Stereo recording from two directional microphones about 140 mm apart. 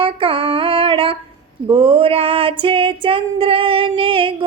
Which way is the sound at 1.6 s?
40° right (ahead or behind).